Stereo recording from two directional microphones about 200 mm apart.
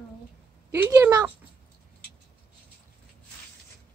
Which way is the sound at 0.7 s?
15° right (ahead or behind).